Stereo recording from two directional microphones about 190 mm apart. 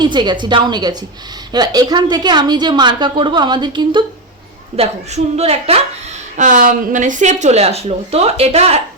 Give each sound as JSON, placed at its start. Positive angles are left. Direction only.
{"t": 0.0, "sound": "a woman's voice", "side_deg": -25}